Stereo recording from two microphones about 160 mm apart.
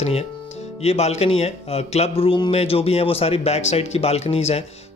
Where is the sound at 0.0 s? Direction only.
40° left (ahead or behind).